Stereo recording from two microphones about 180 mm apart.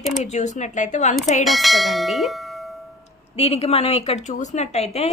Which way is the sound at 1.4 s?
Centre (ahead or behind).